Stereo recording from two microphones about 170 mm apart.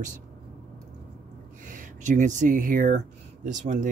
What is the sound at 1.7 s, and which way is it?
Speech, 50° right (ahead or behind).